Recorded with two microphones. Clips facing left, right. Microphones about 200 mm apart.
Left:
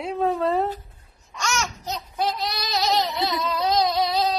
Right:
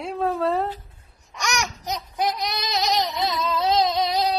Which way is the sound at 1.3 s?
15° right (ahead or behind).